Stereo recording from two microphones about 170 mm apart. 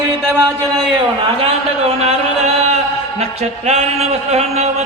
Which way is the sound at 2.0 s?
40° right (ahead or behind).